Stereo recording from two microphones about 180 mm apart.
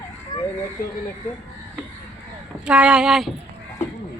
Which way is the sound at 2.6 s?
5° right (ahead or behind).